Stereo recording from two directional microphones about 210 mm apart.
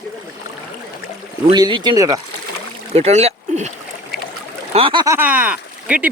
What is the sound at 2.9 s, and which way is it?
Speech, 30° right (ahead or behind).